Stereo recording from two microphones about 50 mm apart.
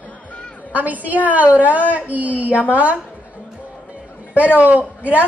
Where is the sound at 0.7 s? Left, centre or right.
Right.